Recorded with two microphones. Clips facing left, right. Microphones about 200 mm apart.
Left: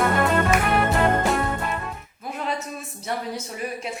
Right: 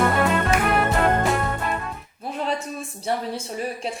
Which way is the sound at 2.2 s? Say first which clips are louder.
Right 3 dB; 30° right (ahead or behind).